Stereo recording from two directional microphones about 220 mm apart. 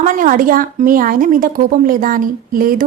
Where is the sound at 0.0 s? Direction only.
35° right (ahead or behind).